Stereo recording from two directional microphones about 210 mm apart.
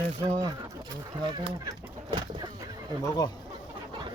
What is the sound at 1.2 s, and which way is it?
Chicken, 20° right (ahead or behind).